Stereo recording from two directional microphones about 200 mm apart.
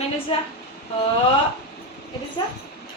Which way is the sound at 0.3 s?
30° left (ahead or behind).